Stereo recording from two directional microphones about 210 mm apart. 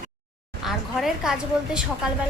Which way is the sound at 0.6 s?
Centre (ahead or behind).